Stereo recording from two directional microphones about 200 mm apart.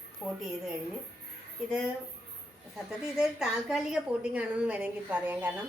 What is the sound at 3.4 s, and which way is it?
A woman's voice, 5° right (ahead or behind).